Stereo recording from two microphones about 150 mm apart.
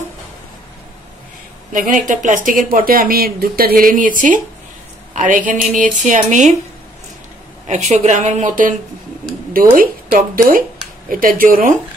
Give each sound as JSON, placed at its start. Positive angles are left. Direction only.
{"t": 1.7, "sound": "a woman's voice", "side_deg": -60}
{"t": 7.9, "sound": "speech", "side_deg": -50}
{"t": 9.5, "sound": "speech", "side_deg": -70}